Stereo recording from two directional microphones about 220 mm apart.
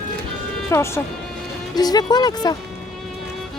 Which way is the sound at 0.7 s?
10° left (ahead or behind).